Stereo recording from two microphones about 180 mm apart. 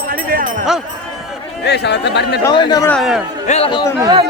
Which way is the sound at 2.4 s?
25° left (ahead or behind).